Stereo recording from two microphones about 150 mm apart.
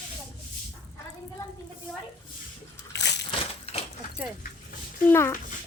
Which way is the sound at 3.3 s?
40° left (ahead or behind).